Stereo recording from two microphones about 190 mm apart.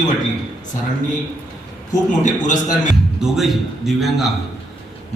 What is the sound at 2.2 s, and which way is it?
Speech, 40° left (ahead or behind).